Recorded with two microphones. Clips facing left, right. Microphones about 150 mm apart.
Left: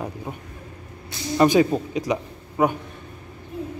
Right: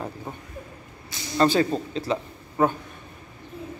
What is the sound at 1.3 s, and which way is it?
Speech, 15° left (ahead or behind).